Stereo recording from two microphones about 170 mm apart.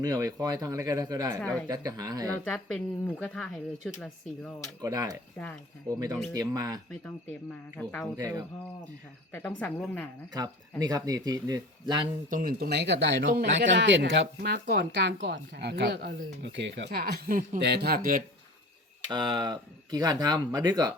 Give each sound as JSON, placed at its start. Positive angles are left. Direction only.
{"t": 0.0, "sound": "speech", "side_deg": -20}
{"t": 2.3, "sound": "speech", "side_deg": 5}
{"t": 4.8, "sound": "speech", "side_deg": -20}
{"t": 5.4, "sound": "speech", "side_deg": 10}
{"t": 5.9, "sound": "speech", "side_deg": -20}
{"t": 7.8, "sound": "speech", "side_deg": 10}
{"t": 8.1, "sound": "speech", "side_deg": -20}
{"t": 9.3, "sound": "speech", "side_deg": 10}
{"t": 10.3, "sound": "speech", "side_deg": -20}
{"t": 12.3, "sound": "speech", "side_deg": -55}
{"t": 17.2, "sound": "speech", "side_deg": -55}
{"t": 17.6, "sound": "speech", "side_deg": -75}
{"t": 19.0, "sound": "speech", "side_deg": -25}